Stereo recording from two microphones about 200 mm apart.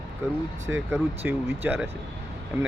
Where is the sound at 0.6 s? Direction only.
15° right (ahead or behind).